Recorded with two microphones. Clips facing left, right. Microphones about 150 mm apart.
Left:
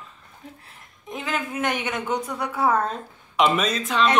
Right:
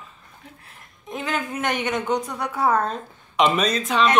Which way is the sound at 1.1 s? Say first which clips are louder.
Right 1 dB; 5° left (ahead or behind).